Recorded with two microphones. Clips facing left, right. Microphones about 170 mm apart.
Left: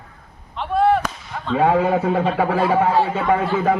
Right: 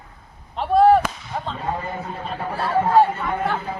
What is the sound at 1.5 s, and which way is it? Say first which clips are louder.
Speech: left 14 dB; 85° left.